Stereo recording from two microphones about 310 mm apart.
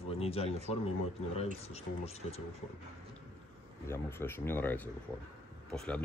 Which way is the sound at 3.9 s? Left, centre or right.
Centre.